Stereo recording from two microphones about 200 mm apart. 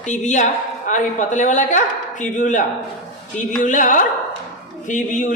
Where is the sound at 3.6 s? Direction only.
40° left (ahead or behind).